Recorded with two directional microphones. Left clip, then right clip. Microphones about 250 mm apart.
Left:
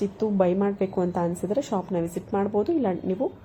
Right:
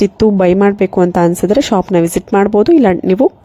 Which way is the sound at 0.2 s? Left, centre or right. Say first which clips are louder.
Right 12 dB; right.